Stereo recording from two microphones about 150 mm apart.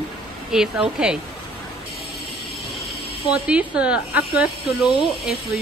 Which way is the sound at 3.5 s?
10° right (ahead or behind).